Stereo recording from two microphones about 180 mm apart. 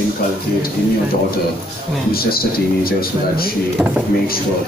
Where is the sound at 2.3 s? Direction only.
55° left (ahead or behind).